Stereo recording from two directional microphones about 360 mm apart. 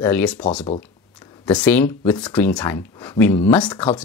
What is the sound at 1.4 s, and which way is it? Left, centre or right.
Speech, centre.